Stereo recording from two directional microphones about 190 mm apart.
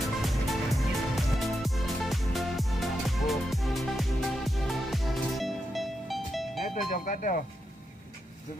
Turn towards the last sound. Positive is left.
turn(degrees=45)  # may be behind; listen again after turning